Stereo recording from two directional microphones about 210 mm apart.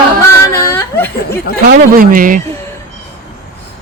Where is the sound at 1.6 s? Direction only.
45° right (ahead or behind).